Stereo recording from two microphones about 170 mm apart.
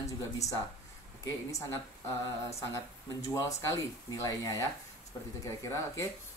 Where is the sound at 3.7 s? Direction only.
15° left (ahead or behind).